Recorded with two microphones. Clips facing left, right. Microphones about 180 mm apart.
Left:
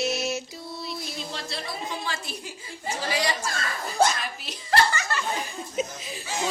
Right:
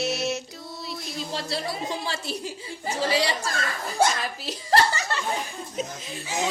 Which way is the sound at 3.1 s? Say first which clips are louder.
Right 2 dB; 30° right (ahead or behind).